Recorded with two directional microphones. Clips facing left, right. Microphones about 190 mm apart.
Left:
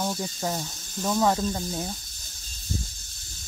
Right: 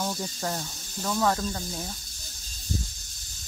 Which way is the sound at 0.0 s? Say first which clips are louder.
Left 2 dB; 10° left (ahead or behind).